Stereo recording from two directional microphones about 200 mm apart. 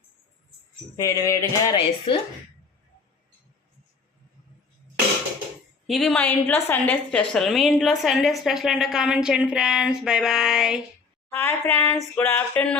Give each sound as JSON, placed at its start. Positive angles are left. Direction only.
{"t": 0.9, "sound": "a woman's voice", "side_deg": 15}
{"t": 5.9, "sound": "a woman's voice", "side_deg": 0}
{"t": 11.3, "sound": "a woman's voice", "side_deg": 10}